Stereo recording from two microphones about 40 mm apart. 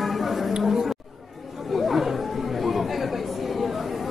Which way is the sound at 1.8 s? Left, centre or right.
Centre.